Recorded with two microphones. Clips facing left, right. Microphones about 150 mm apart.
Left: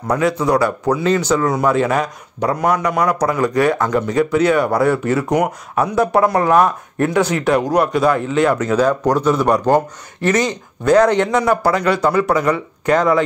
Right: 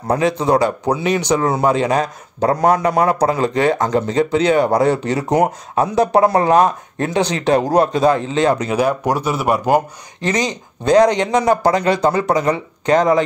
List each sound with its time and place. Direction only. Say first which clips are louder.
0.1 s speech: right 1 dB; 25° right (ahead or behind)